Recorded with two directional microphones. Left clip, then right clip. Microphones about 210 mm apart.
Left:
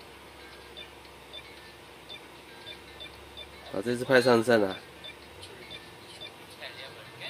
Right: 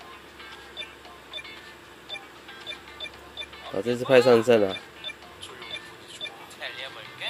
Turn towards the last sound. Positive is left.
turn(degrees=0)  # may be behind; listen again after turning